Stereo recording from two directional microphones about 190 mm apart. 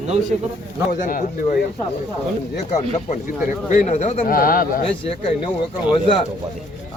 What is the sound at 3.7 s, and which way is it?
Speech, 35° left (ahead or behind).